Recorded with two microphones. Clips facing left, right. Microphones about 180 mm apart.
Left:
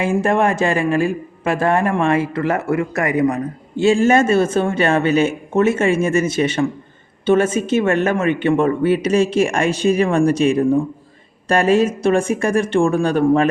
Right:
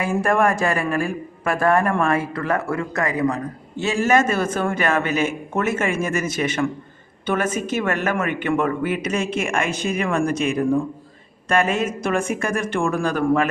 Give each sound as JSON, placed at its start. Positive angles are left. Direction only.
{"t": 0.0, "sound": "a man's voice", "side_deg": 25}